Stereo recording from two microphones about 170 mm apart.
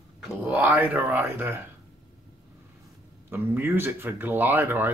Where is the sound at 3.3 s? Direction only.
15° right (ahead or behind).